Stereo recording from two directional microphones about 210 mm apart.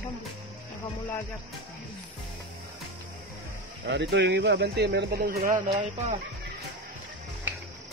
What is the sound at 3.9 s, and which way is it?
Speech, 55° right (ahead or behind).